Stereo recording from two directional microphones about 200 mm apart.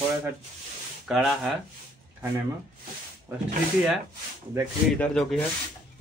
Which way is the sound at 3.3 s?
15° right (ahead or behind).